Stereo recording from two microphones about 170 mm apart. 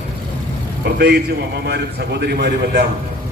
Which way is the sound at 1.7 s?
75° right (ahead or behind).